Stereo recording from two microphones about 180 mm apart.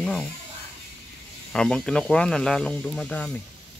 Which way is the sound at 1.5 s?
5° left (ahead or behind).